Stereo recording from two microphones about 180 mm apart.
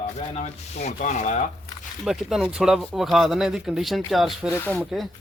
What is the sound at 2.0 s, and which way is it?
Speech, centre (ahead or behind).